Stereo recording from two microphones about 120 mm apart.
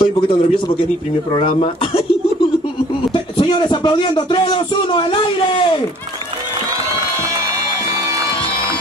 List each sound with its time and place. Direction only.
0.0 s a man's voice: 50° left (ahead or behind)
3.1 s speech: 40° left (ahead or behind)